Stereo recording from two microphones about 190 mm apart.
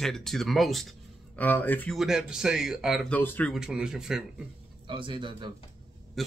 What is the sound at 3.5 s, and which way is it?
Speech, 5° right (ahead or behind).